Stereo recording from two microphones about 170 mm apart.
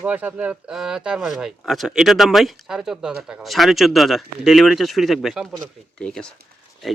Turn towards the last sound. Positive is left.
turn(degrees=5)  # may be behind; listen again after turning